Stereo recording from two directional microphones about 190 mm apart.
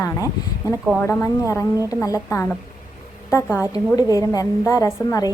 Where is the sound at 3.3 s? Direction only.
15° left (ahead or behind).